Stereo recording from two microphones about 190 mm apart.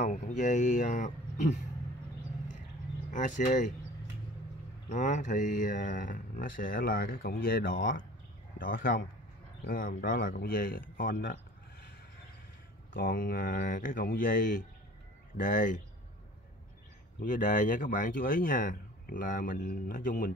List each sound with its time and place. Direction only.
0.0 s speech: 40° left (ahead or behind)
3.1 s speech: 40° left (ahead or behind)
4.8 s speech: 40° left (ahead or behind)
7.7 s speech: 75° left (ahead or behind)
8.5 s speech: 45° left (ahead or behind)
12.9 s speech: 50° left (ahead or behind)
17.2 s speech: 45° left (ahead or behind)